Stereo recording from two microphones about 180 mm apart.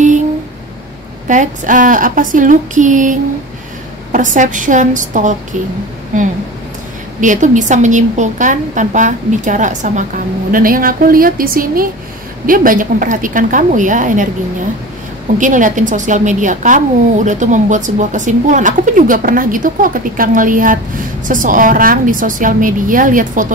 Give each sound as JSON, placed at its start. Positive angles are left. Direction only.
{"t": 1.2, "sound": "a woman's voice", "side_deg": -45}
{"t": 7.2, "sound": "a woman's voice", "side_deg": -45}
{"t": 15.3, "sound": "a woman's voice", "side_deg": -45}